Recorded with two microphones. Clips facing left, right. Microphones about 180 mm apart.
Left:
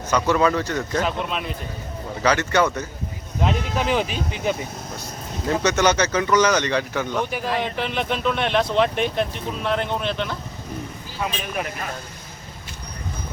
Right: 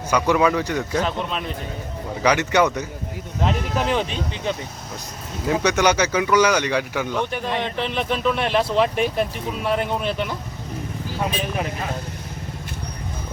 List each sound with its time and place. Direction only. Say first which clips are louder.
0.1 s speech: right 1 dB; 10° right (ahead or behind)
1.0 s speech: even; 5° left (ahead or behind)
2.2 s speech: right 1 dB; 15° right (ahead or behind)
3.4 s speech: even; centre (ahead or behind)
5.5 s speech: right 1 dB; 10° right (ahead or behind)
7.2 s speech: left 1 dB; 5° left (ahead or behind)